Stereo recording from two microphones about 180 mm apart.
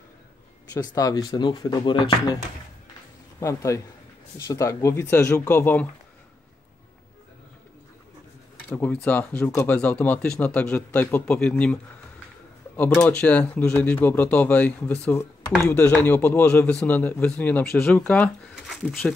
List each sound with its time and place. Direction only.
0.7 s speech: 20° left (ahead or behind)
3.3 s speech: 15° left (ahead or behind)
8.6 s speech: 10° left (ahead or behind)